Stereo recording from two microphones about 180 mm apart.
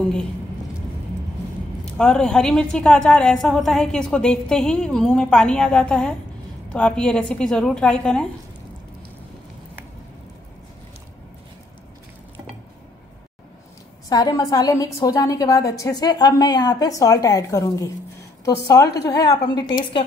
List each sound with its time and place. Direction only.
2.0 s a woman's voice: 5° left (ahead or behind)
14.0 s a woman's voice: 20° left (ahead or behind)